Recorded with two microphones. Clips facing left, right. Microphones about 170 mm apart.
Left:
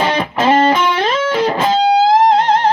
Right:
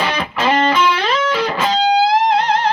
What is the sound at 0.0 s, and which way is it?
Music, 45° left (ahead or behind).